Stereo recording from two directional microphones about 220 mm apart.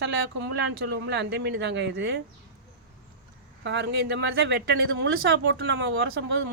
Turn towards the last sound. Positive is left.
turn(degrees=-50)  # may be behind; listen again after turning